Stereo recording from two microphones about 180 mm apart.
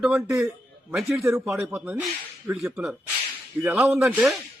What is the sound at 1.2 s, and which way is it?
A man's voice, 15° right (ahead or behind).